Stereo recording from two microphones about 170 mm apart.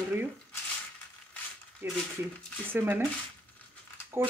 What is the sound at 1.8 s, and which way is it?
Speech, 15° right (ahead or behind).